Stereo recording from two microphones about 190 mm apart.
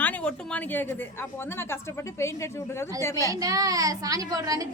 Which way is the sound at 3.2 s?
20° right (ahead or behind).